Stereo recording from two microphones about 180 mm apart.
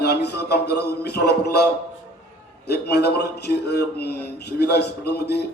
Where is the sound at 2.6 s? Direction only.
65° left (ahead or behind).